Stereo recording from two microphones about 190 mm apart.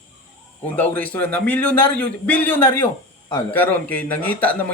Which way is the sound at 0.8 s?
10° left (ahead or behind).